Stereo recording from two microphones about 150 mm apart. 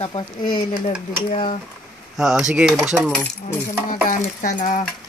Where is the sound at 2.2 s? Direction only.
5° right (ahead or behind).